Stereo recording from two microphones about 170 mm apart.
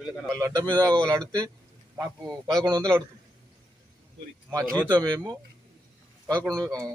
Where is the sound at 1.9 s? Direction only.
20° right (ahead or behind).